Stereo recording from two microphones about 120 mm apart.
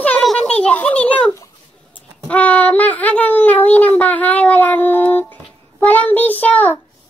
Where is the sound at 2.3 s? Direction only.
10° left (ahead or behind).